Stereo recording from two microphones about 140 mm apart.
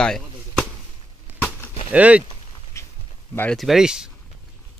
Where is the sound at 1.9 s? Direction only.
10° right (ahead or behind).